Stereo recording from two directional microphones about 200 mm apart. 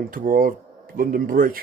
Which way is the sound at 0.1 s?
45° right (ahead or behind).